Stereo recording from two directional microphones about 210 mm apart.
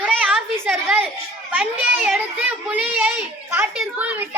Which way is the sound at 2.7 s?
5° right (ahead or behind).